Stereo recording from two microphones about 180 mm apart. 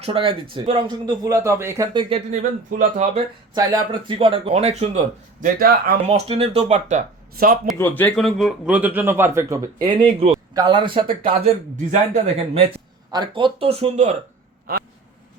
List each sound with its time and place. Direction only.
0.0 s speech: 30° right (ahead or behind)
2.3 s speech: 45° right (ahead or behind)
3.5 s speech: 20° right (ahead or behind); by 5.5 s 35° right (ahead or behind)
5.5 s speech: 55° right (ahead or behind)
6.1 s speech: 35° right (ahead or behind); by 7.7 s 50° right (ahead or behind)
7.8 s speech: 10° left (ahead or behind); by 14.2 s 35° right (ahead or behind)
14.7 s a man's voice: 55° right (ahead or behind)